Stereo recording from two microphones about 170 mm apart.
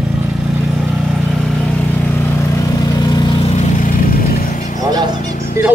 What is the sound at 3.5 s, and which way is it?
Vehicle, 55° left (ahead or behind).